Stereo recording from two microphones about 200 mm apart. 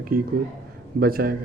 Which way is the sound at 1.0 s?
50° right (ahead or behind).